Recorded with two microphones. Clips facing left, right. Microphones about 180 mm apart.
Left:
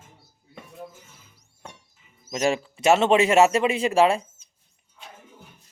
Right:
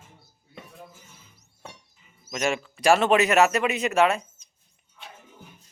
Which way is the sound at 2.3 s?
35° left (ahead or behind).